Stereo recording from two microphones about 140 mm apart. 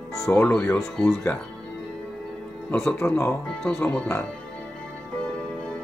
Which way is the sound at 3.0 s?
15° left (ahead or behind).